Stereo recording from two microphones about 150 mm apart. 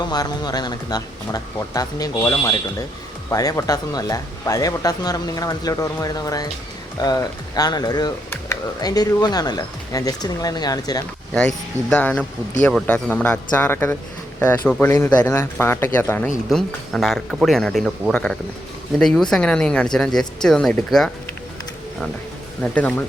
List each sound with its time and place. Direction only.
0.0 s speech: 25° left (ahead or behind)
11.3 s speech: 5° left (ahead or behind)
22.6 s speech: 10° left (ahead or behind)